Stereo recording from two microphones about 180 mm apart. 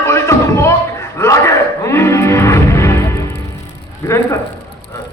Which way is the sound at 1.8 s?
15° left (ahead or behind).